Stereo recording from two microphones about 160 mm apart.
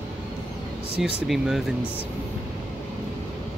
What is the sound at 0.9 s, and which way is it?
Speech, 5° right (ahead or behind).